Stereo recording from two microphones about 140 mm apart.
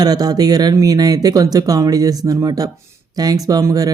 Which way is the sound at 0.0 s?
30° right (ahead or behind).